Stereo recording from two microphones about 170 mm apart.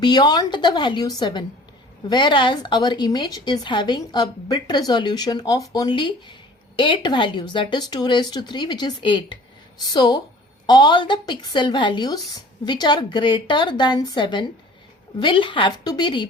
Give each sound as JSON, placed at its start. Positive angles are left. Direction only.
{"t": 0.0, "sound": "speech", "side_deg": 25}